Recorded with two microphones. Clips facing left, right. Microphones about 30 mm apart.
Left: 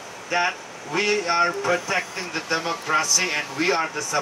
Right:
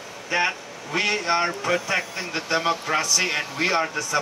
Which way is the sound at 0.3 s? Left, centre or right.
Right.